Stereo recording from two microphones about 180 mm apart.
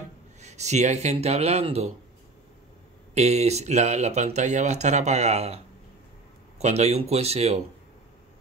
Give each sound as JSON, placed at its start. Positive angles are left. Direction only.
{"t": 0.4, "sound": "speech", "side_deg": -40}
{"t": 3.2, "sound": "speech", "side_deg": -35}
{"t": 6.6, "sound": "speech", "side_deg": -35}